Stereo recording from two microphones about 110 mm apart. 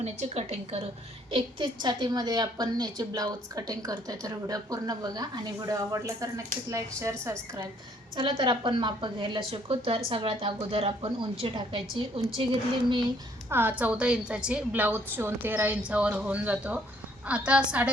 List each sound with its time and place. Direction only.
0.0 s a woman's voice: 75° right (ahead or behind)
1.3 s a woman's voice: 55° right (ahead or behind); by 7.3 s 25° right (ahead or behind)
8.1 s a woman's voice: 50° right (ahead or behind)
13.5 s a woman's voice: 15° right (ahead or behind)